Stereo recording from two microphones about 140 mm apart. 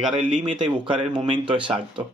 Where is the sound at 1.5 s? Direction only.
35° right (ahead or behind).